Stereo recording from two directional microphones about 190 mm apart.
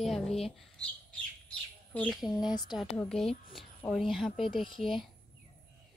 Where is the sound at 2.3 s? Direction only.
20° left (ahead or behind).